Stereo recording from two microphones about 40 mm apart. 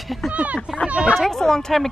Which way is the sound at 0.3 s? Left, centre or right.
Right.